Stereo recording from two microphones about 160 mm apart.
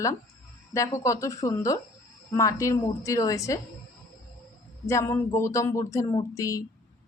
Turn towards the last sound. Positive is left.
turn(degrees=20)  # may be behind; listen again after turning